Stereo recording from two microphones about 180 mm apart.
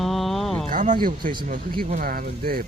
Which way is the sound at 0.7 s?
45° right (ahead or behind).